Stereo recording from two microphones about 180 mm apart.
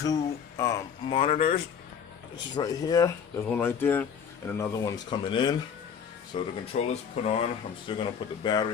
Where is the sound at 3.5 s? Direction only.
10° left (ahead or behind); by 6.5 s 30° left (ahead or behind).